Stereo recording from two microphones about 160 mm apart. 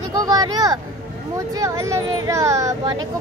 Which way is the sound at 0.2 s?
25° right (ahead or behind).